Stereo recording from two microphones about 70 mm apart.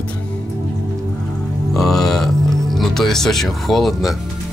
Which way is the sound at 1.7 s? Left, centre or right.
Centre.